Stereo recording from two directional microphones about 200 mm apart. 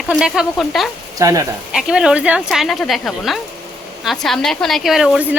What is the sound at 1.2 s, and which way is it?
Speech, 15° right (ahead or behind).